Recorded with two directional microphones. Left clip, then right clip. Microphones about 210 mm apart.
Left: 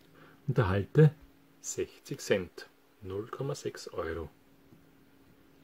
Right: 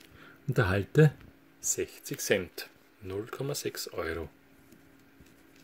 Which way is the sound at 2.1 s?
45° left (ahead or behind).